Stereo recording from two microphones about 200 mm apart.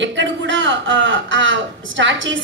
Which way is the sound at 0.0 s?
65° right (ahead or behind).